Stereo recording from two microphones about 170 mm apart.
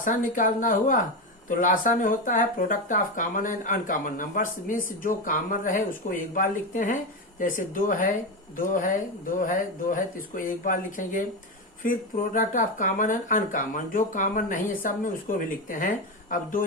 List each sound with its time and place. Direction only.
0.0 s speech: 50° left (ahead or behind)